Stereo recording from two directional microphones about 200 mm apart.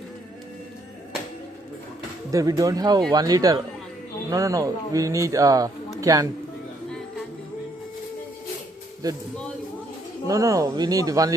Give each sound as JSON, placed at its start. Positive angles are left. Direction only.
{"t": 2.3, "sound": "speech", "side_deg": -15}
{"t": 9.0, "sound": "speech", "side_deg": -20}
{"t": 10.2, "sound": "speech", "side_deg": -15}